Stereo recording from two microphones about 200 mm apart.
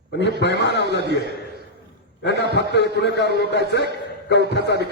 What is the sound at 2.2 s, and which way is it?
A man's voice, 55° left (ahead or behind).